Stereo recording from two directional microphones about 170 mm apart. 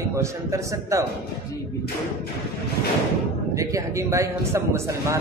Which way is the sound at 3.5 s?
20° right (ahead or behind).